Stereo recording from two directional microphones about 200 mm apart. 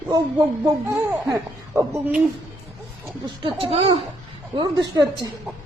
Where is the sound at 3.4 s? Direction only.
25° right (ahead or behind).